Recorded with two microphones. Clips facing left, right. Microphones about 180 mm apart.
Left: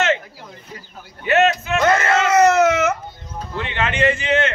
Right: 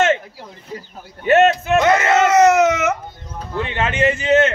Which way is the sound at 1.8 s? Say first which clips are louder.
Right 2 dB; 20° right (ahead or behind).